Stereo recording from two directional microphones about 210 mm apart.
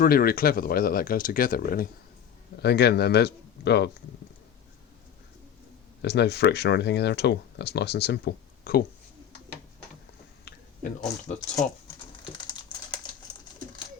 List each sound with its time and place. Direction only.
0.0 s speech: 45° left (ahead or behind)
6.0 s speech: 50° left (ahead or behind)
11.3 s speech: 30° left (ahead or behind)
12.5 s typing: 20° left (ahead or behind)